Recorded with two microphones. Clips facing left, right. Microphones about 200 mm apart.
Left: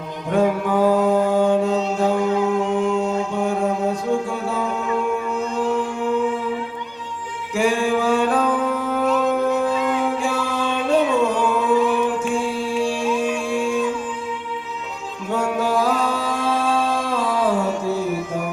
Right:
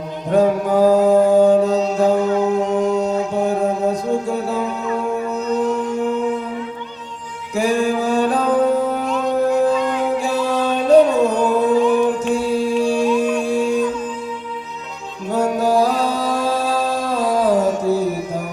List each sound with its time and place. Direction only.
0.3 s mantra: 40° right (ahead or behind)
4.3 s music: 40° right (ahead or behind)
7.5 s music: 40° right (ahead or behind)
10.2 s music: 40° right (ahead or behind)
15.3 s music: 40° right (ahead or behind)